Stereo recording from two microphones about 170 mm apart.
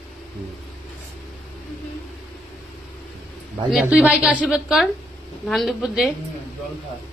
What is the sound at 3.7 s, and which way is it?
A woman's voice, 5° right (ahead or behind).